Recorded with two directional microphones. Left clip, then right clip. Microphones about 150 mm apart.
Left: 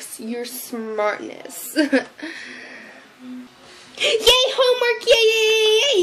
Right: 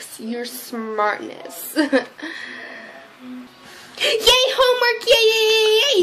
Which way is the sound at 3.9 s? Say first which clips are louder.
Even; centre (ahead or behind).